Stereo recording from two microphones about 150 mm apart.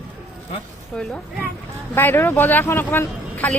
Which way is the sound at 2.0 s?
15° left (ahead or behind).